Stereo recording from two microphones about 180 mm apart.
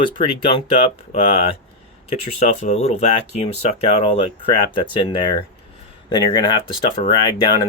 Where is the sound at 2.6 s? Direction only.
40° left (ahead or behind).